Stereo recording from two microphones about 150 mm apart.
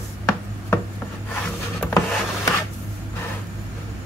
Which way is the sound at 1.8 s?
5° left (ahead or behind).